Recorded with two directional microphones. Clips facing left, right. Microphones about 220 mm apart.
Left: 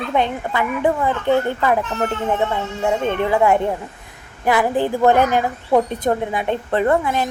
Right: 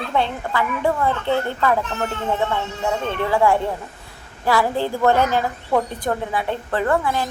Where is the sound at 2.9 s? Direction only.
20° left (ahead or behind).